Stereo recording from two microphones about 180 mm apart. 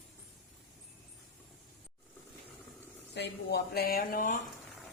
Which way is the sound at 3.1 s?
65° left (ahead or behind).